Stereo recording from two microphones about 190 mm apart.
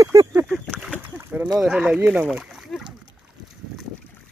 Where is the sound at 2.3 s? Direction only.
5° right (ahead or behind).